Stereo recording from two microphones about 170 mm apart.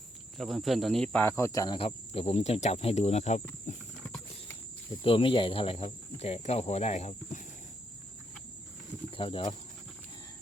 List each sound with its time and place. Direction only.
0.3 s cricket: centre (ahead or behind); by 3.4 s 40° left (ahead or behind)
3.7 s horse: 45° left (ahead or behind)
5.0 s speech: 30° left (ahead or behind)
9.1 s speech: 30° left (ahead or behind)